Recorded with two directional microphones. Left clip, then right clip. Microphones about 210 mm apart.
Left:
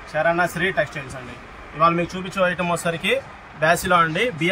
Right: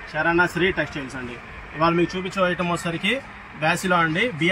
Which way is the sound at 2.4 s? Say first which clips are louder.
Left 2 dB; 45° left (ahead or behind).